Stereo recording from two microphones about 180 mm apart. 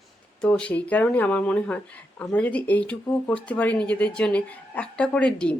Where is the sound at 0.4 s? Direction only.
5° left (ahead or behind).